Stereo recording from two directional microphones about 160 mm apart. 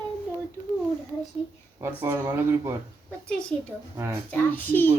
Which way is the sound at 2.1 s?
20° right (ahead or behind).